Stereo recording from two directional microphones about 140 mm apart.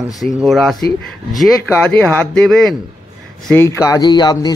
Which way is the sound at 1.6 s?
10° left (ahead or behind).